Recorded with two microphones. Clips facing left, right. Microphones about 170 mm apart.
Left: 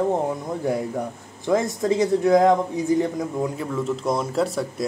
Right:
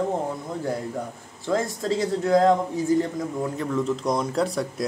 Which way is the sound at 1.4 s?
20° left (ahead or behind).